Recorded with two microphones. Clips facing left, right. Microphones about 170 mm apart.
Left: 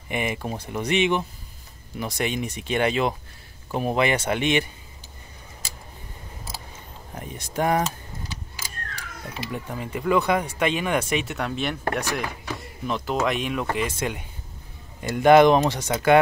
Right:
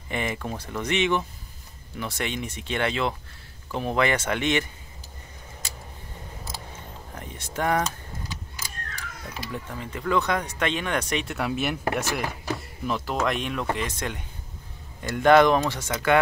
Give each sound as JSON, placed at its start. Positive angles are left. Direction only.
{"t": 0.1, "sound": "speech", "side_deg": 15}
{"t": 7.2, "sound": "speech", "side_deg": 15}
{"t": 9.5, "sound": "speech", "side_deg": 15}